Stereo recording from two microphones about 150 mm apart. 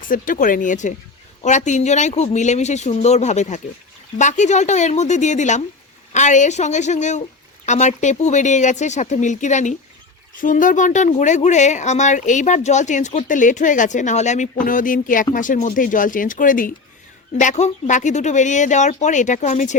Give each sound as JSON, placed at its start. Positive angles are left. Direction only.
{"t": 0.1, "sound": "speech", "side_deg": 65}
{"t": 17.4, "sound": "speech", "side_deg": 50}